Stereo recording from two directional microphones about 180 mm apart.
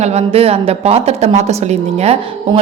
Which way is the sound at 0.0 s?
35° right (ahead or behind).